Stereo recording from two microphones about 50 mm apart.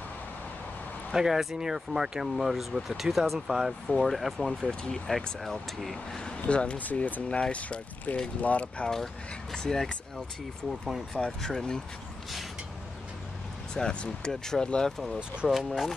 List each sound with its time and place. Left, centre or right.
1.1 s speech: centre
6.2 s speech: left
7.2 s speech: left
8.8 s speech: centre
11.1 s speech: centre
13.7 s speech: centre
15.4 s speech: centre